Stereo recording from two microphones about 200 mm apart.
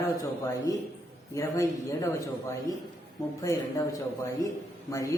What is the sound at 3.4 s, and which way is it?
A man's voice, 15° left (ahead or behind).